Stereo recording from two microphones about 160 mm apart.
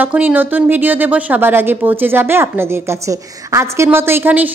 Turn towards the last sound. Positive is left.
turn(degrees=-10)  # may be behind; listen again after turning